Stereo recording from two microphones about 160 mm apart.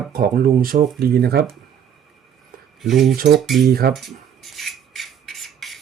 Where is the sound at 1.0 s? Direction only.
80° right.